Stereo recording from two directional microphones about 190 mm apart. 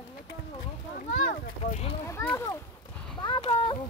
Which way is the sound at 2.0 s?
15° left (ahead or behind).